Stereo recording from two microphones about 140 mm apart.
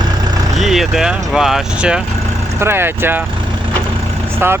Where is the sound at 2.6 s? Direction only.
15° right (ahead or behind).